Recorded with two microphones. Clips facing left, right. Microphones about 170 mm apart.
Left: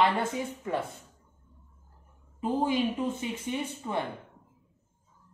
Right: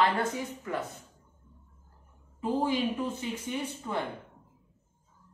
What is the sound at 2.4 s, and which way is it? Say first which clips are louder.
A woman's voice: left 1 dB; 20° left (ahead or behind).